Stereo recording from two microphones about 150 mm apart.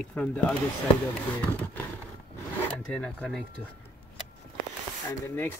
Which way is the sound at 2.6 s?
5° left (ahead or behind).